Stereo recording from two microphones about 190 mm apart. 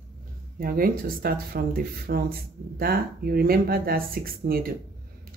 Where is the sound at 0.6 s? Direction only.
50° right (ahead or behind).